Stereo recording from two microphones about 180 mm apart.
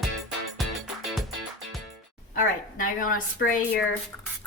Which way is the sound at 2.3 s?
50° left (ahead or behind).